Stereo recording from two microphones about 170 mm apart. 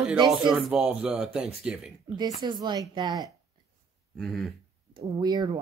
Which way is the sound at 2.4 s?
25° right (ahead or behind).